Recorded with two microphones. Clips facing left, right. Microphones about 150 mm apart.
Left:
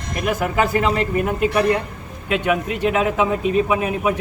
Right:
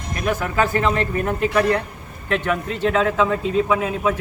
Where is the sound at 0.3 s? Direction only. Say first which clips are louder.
Left 1 dB; 10° left (ahead or behind).